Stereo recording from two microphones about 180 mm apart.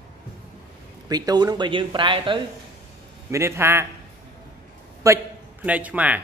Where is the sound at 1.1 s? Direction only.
20° right (ahead or behind).